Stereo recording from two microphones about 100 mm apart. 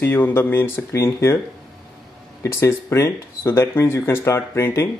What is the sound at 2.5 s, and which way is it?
Speech, 30° left (ahead or behind).